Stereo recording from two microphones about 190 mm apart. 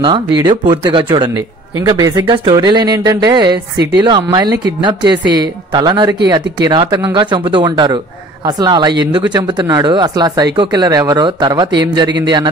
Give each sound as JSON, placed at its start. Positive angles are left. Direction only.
{"t": 0.0, "sound": "speech", "side_deg": -25}
{"t": 3.7, "sound": "speech", "side_deg": -60}
{"t": 4.0, "sound": "speech", "side_deg": -25}